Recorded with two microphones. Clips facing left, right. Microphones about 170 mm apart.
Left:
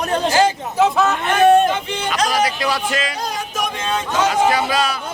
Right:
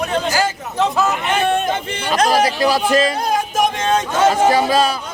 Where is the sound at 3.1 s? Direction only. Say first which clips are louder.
Right 6 dB; 55° right (ahead or behind); by 4.9 s 35° right (ahead or behind).